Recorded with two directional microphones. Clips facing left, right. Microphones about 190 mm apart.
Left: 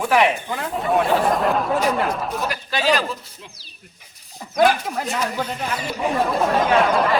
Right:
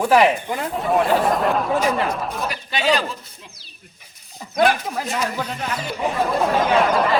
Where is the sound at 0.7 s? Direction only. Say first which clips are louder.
Even; centre (ahead or behind).